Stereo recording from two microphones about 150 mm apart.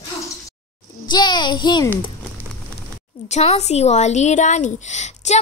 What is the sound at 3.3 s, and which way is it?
Speech, 45° left (ahead or behind).